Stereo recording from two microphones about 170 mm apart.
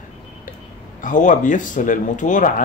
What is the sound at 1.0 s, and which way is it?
Speech, 50° left (ahead or behind).